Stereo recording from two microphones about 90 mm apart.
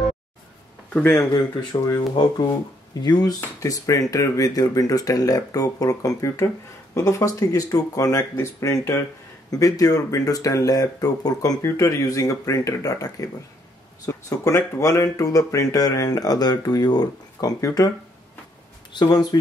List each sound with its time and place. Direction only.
1.3 s speech: 50° left (ahead or behind)
3.3 s speech: 40° left (ahead or behind)
18.9 s speech: 50° left (ahead or behind)